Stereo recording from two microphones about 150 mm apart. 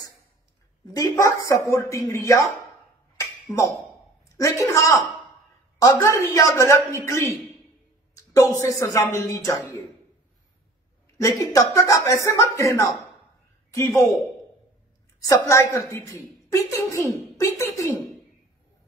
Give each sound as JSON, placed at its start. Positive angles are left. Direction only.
{"t": 0.9, "sound": "a woman's voice", "side_deg": 20}
{"t": 3.2, "sound": "a sound", "side_deg": 20}
{"t": 4.4, "sound": "a woman's voice", "side_deg": 20}
{"t": 11.1, "sound": "a woman's voice", "side_deg": 20}
{"t": 15.1, "sound": "a woman's voice", "side_deg": 25}